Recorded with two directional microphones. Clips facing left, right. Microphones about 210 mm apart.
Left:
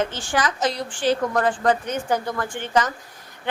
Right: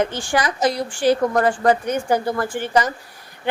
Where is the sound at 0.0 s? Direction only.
10° right (ahead or behind).